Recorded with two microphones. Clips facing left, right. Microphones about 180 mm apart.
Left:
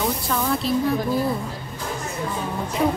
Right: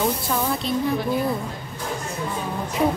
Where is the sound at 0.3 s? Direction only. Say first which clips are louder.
Left 1 dB; 10° right (ahead or behind).